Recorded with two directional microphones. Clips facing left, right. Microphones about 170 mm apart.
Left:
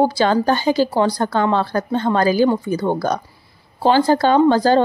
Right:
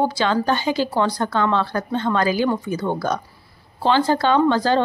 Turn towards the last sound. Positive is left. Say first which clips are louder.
# left 4 dB
turn(degrees=40)  # may be behind; listen again after turning